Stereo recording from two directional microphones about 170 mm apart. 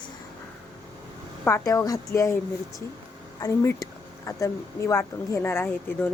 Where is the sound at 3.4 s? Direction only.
20° left (ahead or behind).